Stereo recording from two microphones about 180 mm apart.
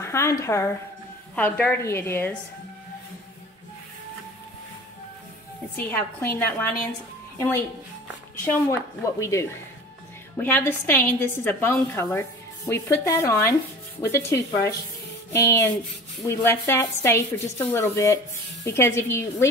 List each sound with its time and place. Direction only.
0.0 s a woman's voice: 15° left (ahead or behind)
5.8 s a woman's voice: 10° left (ahead or behind)